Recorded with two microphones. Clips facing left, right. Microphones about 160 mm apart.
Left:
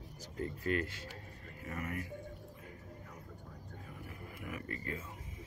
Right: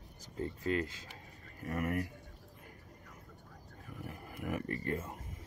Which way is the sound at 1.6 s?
50° right (ahead or behind).